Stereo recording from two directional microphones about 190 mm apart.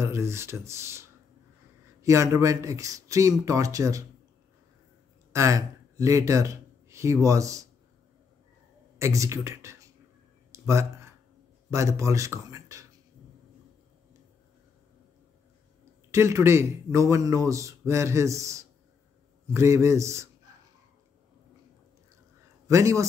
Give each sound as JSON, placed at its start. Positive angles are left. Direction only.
{"t": 0.0, "sound": "a man's voice", "side_deg": -15}
{"t": 5.3, "sound": "speech", "side_deg": -15}
{"t": 8.9, "sound": "speech", "side_deg": -15}
{"t": 10.5, "sound": "a sound", "side_deg": -15}
{"t": 11.7, "sound": "a man's voice", "side_deg": -15}
{"t": 16.1, "sound": "a man's voice", "side_deg": -15}
{"t": 22.7, "sound": "a man's voice", "side_deg": -15}